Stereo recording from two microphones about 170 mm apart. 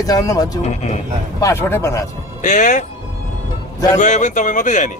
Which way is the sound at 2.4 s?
50° left (ahead or behind).